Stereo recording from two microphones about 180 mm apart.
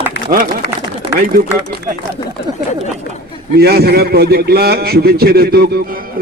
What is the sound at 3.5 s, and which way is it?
A man's voice, 60° right (ahead or behind).